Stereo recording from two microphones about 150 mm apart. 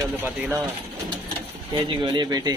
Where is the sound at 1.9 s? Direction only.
30° right (ahead or behind).